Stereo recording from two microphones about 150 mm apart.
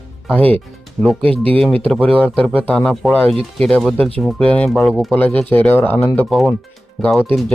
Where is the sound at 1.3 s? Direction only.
40° right (ahead or behind).